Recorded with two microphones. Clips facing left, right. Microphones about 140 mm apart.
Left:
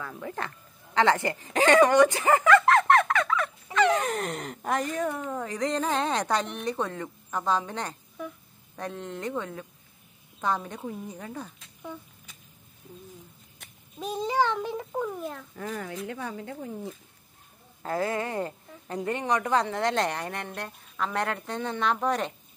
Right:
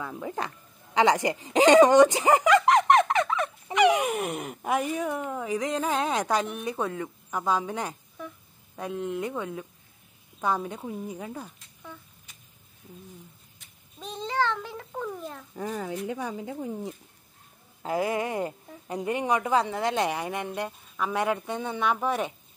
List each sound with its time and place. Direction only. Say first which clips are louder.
0.0 s a woman's voice: right 2 dB; 15° right (ahead or behind)
13.9 s a child's voice: left 3 dB; 10° left (ahead or behind)
15.5 s a woman's voice: right 3 dB; 15° right (ahead or behind)